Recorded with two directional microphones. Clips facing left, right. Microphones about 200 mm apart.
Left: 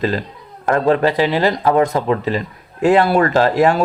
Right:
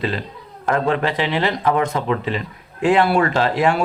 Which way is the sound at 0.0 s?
40° left (ahead or behind).